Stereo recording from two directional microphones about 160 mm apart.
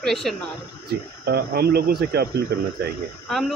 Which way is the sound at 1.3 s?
85° right.